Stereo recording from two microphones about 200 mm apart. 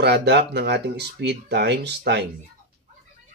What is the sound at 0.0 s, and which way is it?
Speech, 55° right (ahead or behind).